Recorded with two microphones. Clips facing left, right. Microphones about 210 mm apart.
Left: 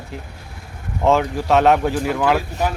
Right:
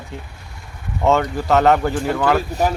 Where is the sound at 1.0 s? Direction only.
Centre (ahead or behind).